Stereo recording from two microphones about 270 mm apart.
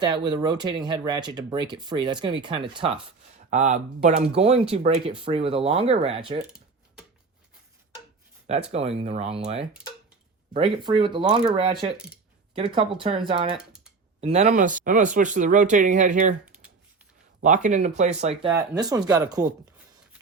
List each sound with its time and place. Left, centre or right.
0.0 s speech: centre
8.7 s speech: right
11.9 s speech: centre
12.5 s speech: centre
16.5 s a sound: centre
17.4 s speech: right
18.5 s speech: centre